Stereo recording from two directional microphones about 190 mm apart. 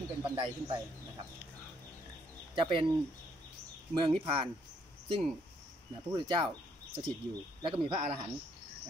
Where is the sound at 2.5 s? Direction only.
25° right (ahead or behind).